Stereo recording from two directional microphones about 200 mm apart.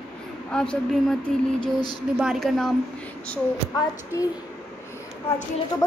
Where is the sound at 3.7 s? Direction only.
15° left (ahead or behind).